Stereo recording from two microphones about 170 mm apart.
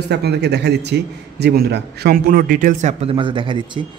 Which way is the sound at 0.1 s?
80° right.